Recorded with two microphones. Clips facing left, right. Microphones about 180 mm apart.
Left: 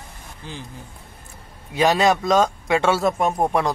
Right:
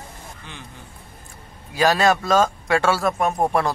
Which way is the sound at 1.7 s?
20° left (ahead or behind).